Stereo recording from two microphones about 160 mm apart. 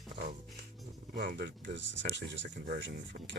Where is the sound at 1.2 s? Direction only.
85° right.